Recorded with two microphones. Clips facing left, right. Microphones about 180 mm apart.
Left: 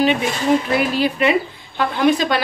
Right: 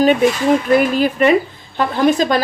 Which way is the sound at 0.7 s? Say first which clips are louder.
Right 4 dB; 45° right (ahead or behind).